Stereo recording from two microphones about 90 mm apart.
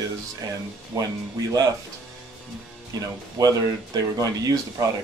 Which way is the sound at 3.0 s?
45° right (ahead or behind).